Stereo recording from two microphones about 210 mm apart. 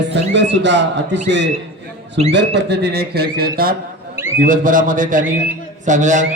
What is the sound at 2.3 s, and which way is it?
A man's voice, 55° right (ahead or behind).